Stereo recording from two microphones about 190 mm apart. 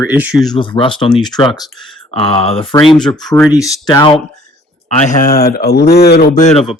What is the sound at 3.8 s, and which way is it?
Speech, 25° left (ahead or behind).